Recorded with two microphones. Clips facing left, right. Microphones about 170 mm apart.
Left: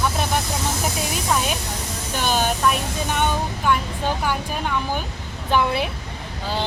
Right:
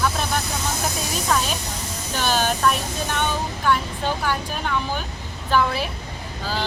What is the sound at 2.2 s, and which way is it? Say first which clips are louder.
Speech: even; 15° left (ahead or behind).